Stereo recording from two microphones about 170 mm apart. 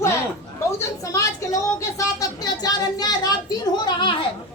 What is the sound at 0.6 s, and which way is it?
A woman's voice, 20° left (ahead or behind).